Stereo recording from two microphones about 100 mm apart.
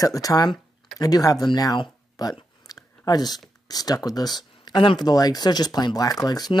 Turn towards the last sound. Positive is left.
turn(degrees=40)  # may be behind; listen again after turning